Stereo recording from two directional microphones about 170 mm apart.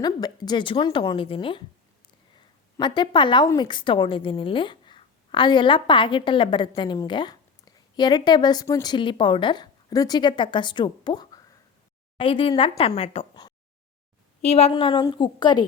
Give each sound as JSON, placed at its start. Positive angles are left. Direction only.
{"t": 0.0, "sound": "speech", "side_deg": 25}
{"t": 2.7, "sound": "speech", "side_deg": 25}
{"t": 14.4, "sound": "speech", "side_deg": 40}